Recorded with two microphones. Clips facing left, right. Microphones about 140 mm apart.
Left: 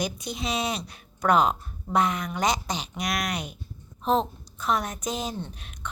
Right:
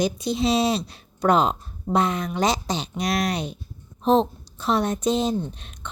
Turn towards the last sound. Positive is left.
turn(degrees=-30)  # may be behind; listen again after turning